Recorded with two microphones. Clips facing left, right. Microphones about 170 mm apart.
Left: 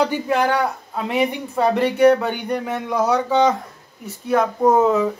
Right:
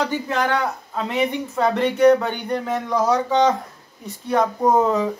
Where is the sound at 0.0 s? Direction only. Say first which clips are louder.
Left 3 dB; 10° left (ahead or behind).